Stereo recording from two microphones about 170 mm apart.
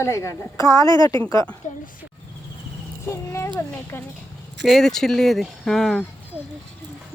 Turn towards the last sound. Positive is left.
turn(degrees=0)  # may be behind; listen again after turning